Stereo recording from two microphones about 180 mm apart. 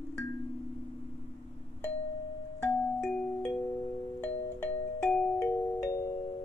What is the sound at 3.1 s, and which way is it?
Music, 10° left (ahead or behind).